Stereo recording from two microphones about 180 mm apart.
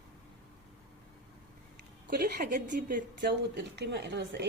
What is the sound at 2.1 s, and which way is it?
Speech, 50° right (ahead or behind).